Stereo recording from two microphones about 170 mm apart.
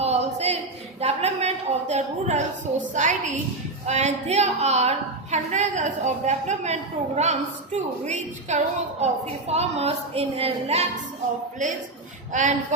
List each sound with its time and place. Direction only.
0.0 s a man's voice: 40° right (ahead or behind)
12.3 s a woman's voice: 45° right (ahead or behind)